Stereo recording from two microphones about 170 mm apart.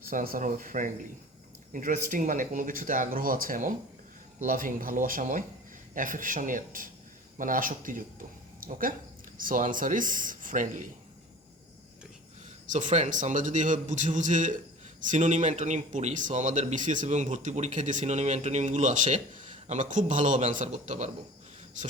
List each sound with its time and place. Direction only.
0.1 s speech: 55° right (ahead or behind)
12.6 s speech: 50° right (ahead or behind)